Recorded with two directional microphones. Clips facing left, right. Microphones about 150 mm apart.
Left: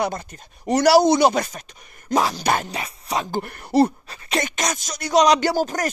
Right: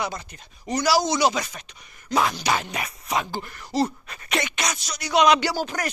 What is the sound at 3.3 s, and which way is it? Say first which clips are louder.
Speech: left 6 dB; 50° left (ahead or behind).